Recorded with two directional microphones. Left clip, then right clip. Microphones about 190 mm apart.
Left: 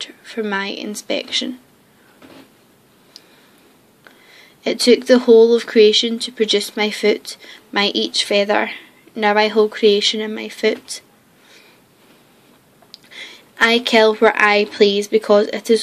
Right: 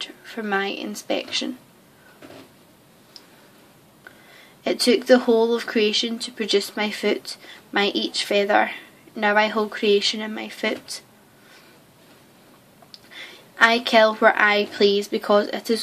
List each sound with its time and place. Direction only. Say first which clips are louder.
0.0 s speech: left 6 dB; 30° left (ahead or behind)
4.6 s speech: left 4 dB; 30° left (ahead or behind)
12.9 s a woman's voice: left 4 dB; 30° left (ahead or behind)